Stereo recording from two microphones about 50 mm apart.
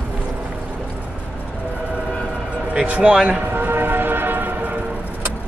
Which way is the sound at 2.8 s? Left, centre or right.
Right.